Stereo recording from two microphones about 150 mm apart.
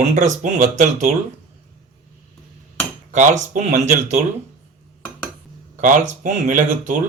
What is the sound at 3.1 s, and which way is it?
Speech, 55° right (ahead or behind).